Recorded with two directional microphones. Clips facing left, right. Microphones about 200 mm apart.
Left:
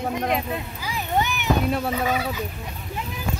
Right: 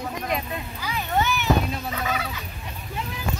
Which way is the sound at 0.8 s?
15° left (ahead or behind).